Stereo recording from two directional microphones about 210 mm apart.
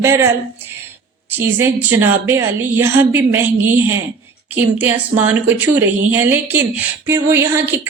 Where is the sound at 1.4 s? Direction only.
10° right (ahead or behind).